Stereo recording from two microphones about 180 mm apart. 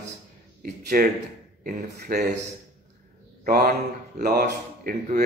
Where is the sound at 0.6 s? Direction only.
55° right (ahead or behind).